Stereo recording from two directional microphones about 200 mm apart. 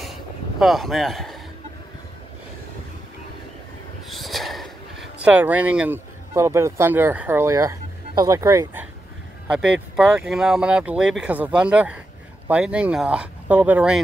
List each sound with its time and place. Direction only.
0.0 s vehicle: centre (ahead or behind)
4.1 s speech: centre (ahead or behind); by 8.8 s 15° right (ahead or behind)
9.5 s speech: 5° right (ahead or behind)